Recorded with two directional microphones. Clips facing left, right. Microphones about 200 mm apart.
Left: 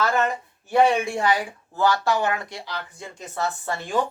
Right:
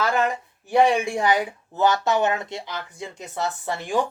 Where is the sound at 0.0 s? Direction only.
15° right (ahead or behind).